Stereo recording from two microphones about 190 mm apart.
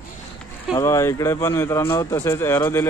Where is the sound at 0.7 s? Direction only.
15° left (ahead or behind).